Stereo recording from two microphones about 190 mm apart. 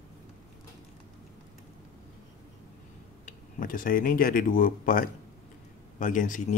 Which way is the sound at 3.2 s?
45° left (ahead or behind).